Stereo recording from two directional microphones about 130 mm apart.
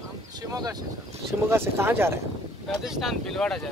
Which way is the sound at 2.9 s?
Centre (ahead or behind).